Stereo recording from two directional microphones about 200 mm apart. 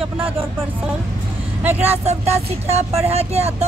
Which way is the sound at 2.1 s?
30° right (ahead or behind).